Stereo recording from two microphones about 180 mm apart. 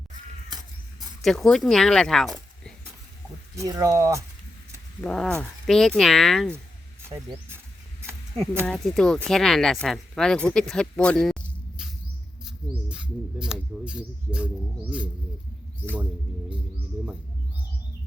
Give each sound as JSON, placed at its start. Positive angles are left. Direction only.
{"t": 0.9, "sound": "speech", "side_deg": 0}
{"t": 3.5, "sound": "speech", "side_deg": -20}
{"t": 4.9, "sound": "speech", "side_deg": 5}
{"t": 8.6, "sound": "speech", "side_deg": 5}
{"t": 12.5, "sound": "a sound", "side_deg": -5}